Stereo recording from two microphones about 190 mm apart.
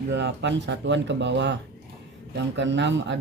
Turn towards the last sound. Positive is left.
turn(degrees=-70)  # may be behind; listen again after turning